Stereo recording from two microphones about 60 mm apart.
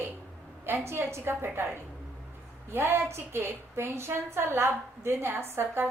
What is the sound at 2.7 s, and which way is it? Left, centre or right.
A woman's voice, right.